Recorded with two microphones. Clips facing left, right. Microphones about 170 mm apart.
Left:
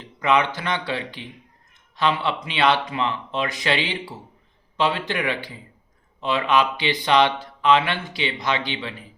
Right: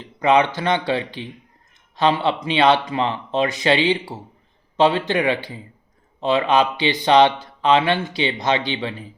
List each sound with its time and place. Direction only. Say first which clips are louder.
0.2 s speech: right 4 dB; 35° right (ahead or behind)
3.6 s speech: right 7 dB; 25° right (ahead or behind)